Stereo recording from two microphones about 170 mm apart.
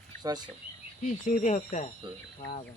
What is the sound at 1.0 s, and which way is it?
Speech, 45° left (ahead or behind).